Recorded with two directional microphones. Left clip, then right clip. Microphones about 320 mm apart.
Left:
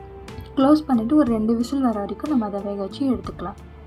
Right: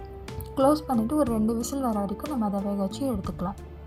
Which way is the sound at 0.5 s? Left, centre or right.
Right.